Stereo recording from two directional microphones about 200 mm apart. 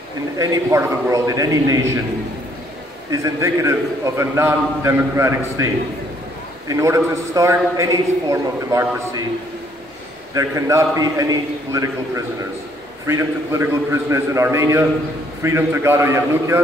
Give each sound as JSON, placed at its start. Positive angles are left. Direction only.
{"t": 0.4, "sound": "a man's voice", "side_deg": -15}
{"t": 3.1, "sound": "a man's voice", "side_deg": -15}
{"t": 6.7, "sound": "a man's voice", "side_deg": -15}
{"t": 10.3, "sound": "a man's voice", "side_deg": -15}
{"t": 13.0, "sound": "a man's voice", "side_deg": -15}